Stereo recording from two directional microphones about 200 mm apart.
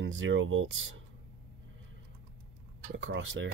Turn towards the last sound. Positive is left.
turn(degrees=-65)  # may be behind; listen again after turning